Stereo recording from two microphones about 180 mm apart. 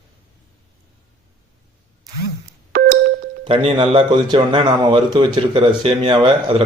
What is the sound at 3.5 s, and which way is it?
A man's voice, 30° right (ahead or behind).